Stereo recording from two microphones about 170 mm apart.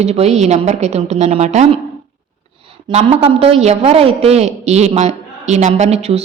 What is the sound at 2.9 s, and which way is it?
A man's voice, 40° right (ahead or behind).